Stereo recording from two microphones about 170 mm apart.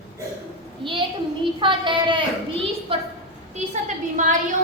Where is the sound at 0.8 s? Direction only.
30° right (ahead or behind).